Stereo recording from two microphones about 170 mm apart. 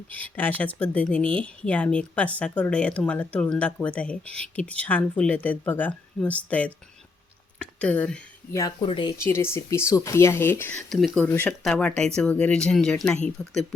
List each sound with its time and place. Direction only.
0.1 s speech: 10° left (ahead or behind)
8.5 s speech: 20° left (ahead or behind)
9.1 s speech: 15° left (ahead or behind)
10.8 s speech: centre (ahead or behind)
11.2 s speech: 10° left (ahead or behind)